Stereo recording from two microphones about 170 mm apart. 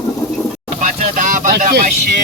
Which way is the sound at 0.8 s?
50° right (ahead or behind).